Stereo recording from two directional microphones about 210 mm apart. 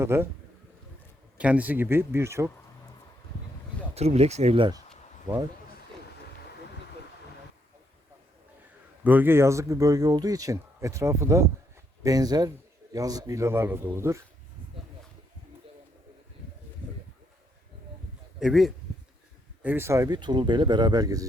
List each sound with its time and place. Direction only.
0.0 s speech: 10° right (ahead or behind)
1.4 s speech: 5° right (ahead or behind)
3.9 s speech: 30° right (ahead or behind)
9.0 s speech: 10° right (ahead or behind)
18.3 s speech: centre (ahead or behind); by 21.2 s 15° right (ahead or behind)